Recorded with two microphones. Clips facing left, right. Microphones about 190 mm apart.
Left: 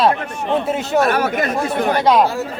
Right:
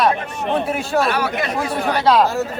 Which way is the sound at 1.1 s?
50° left (ahead or behind).